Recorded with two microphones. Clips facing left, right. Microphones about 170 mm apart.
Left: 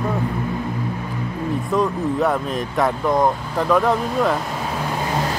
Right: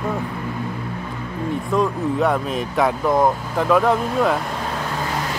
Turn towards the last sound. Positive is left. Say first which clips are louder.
# right 1 dB
turn(degrees=0)  # may be behind; listen again after turning